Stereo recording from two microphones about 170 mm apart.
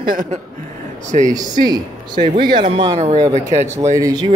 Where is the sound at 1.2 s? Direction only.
20° right (ahead or behind); by 3.7 s 40° right (ahead or behind).